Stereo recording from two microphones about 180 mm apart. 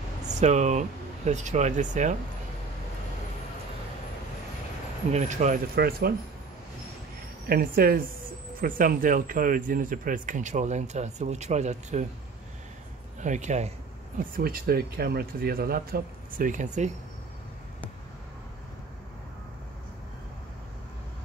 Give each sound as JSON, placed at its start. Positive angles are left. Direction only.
{"t": 0.3, "sound": "speech", "side_deg": -40}
{"t": 5.1, "sound": "speech", "side_deg": -40}
{"t": 5.8, "sound": "speech", "side_deg": -60}
{"t": 7.4, "sound": "speech", "side_deg": -55}
{"t": 13.2, "sound": "speech", "side_deg": -40}
{"t": 14.3, "sound": "speech", "side_deg": -55}